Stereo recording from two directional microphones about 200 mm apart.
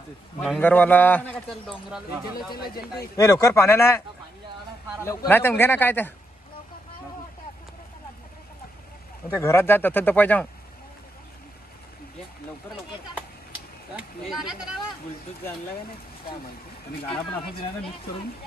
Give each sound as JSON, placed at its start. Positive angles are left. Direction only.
{"t": 0.4, "sound": "a man's voice", "side_deg": 5}
{"t": 1.7, "sound": "speech", "side_deg": -5}
{"t": 2.5, "sound": "speech", "side_deg": 50}
{"t": 3.0, "sound": "a man's voice", "side_deg": 15}
{"t": 5.0, "sound": "a man's voice", "side_deg": 10}
{"t": 9.4, "sound": "a man's voice", "side_deg": 15}
{"t": 13.9, "sound": "speech", "side_deg": 0}